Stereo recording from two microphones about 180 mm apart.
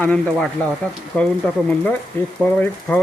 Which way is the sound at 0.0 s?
5° left (ahead or behind).